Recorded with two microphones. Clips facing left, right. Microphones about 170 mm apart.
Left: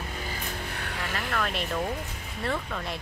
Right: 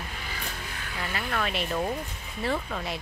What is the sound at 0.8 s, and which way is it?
Music, 70° left (ahead or behind).